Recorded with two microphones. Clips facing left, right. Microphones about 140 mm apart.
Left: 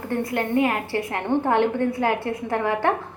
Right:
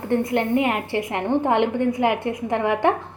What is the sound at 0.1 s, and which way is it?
A woman's voice, 20° right (ahead or behind).